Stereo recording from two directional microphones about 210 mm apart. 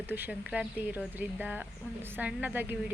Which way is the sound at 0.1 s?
10° right (ahead or behind).